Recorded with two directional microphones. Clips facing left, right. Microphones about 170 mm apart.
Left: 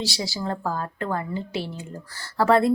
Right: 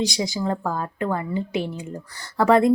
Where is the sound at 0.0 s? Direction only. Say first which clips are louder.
Right 5 dB; 20° right (ahead or behind).